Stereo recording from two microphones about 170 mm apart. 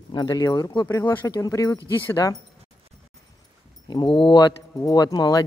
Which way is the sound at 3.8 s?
30° left (ahead or behind).